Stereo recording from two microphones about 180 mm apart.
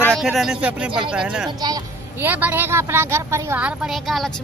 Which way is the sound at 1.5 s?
20° right (ahead or behind).